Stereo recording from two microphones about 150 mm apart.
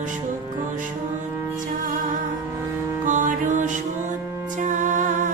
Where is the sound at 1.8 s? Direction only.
65° right (ahead or behind).